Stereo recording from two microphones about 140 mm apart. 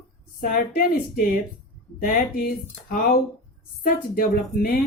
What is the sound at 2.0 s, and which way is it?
A woman's voice, 85° left.